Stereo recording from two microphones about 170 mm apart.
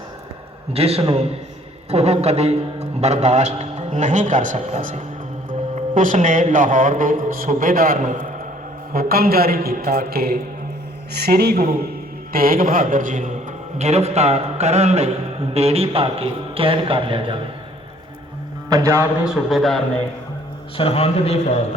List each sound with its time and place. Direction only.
0.7 s a man's voice: 35° right (ahead or behind)
18.7 s a man's voice: 20° right (ahead or behind)
19.2 s a man's voice: centre (ahead or behind)
20.7 s speech: 35° left (ahead or behind)